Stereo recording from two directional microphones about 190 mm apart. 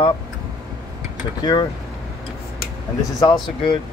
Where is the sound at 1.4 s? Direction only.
20° left (ahead or behind).